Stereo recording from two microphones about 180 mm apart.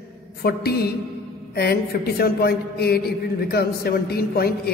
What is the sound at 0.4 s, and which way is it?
A man's voice, 60° left (ahead or behind).